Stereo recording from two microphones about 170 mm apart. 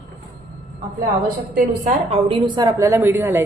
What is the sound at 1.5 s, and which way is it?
A woman's voice, 50° right (ahead or behind).